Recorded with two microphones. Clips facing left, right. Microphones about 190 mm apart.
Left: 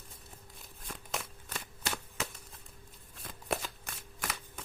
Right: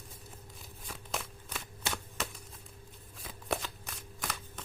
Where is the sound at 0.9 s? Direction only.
Centre (ahead or behind).